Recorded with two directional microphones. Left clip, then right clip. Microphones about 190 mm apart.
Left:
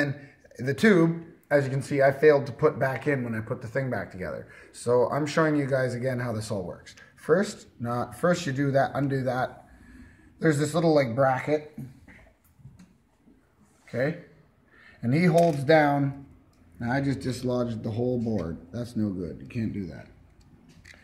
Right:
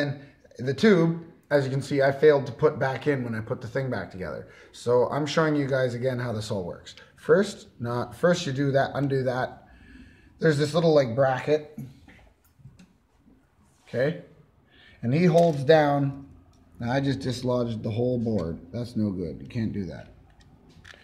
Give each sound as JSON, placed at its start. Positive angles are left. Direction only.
{"t": 0.0, "sound": "a sound", "side_deg": 0}
{"t": 1.6, "sound": "speech", "side_deg": -10}
{"t": 15.0, "sound": "speech", "side_deg": 0}